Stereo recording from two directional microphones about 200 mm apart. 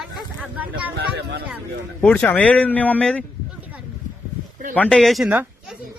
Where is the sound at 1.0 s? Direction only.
50° right (ahead or behind).